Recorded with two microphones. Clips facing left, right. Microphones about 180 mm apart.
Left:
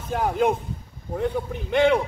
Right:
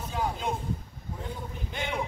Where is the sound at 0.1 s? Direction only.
60° left (ahead or behind).